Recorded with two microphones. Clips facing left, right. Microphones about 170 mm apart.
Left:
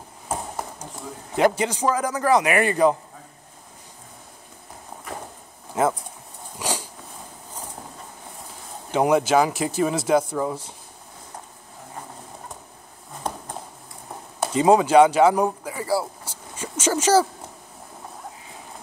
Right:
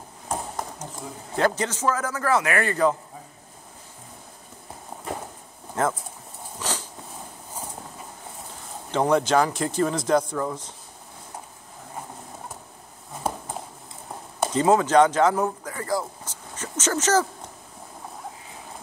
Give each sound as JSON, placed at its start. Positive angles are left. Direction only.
{"t": 1.3, "sound": "speech", "side_deg": 15}
{"t": 5.8, "sound": "speech", "side_deg": 10}
{"t": 6.6, "sound": "dog", "side_deg": 10}
{"t": 8.9, "sound": "speech", "side_deg": 10}
{"t": 13.2, "sound": "a sound", "side_deg": -5}
{"t": 14.4, "sound": "speech", "side_deg": 10}